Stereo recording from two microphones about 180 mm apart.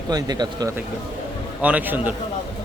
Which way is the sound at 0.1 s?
20° right (ahead or behind).